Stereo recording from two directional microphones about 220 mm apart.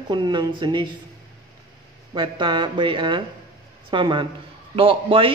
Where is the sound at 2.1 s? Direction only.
25° right (ahead or behind).